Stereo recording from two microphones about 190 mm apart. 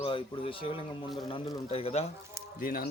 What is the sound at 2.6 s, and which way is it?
Speech, 50° left (ahead or behind).